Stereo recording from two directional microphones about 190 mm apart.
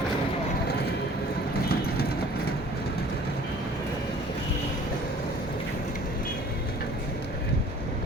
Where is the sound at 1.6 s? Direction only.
55° left (ahead or behind).